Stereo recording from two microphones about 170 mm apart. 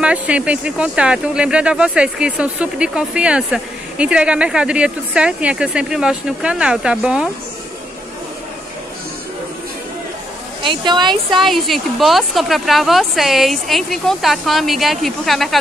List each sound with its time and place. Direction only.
0.0 s speech: 5° right (ahead or behind)
10.6 s speech: 30° right (ahead or behind)
11.2 s speech: centre (ahead or behind)